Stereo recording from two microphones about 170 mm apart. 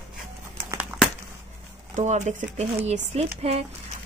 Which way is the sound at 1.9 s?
45° right (ahead or behind).